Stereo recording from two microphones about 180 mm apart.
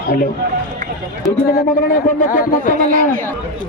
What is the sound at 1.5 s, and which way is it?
A man's voice, 50° left (ahead or behind).